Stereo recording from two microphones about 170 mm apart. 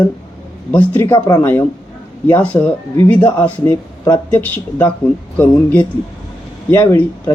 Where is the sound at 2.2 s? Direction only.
10° left (ahead or behind).